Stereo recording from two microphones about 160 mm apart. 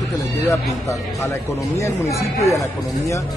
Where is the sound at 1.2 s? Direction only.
20° left (ahead or behind).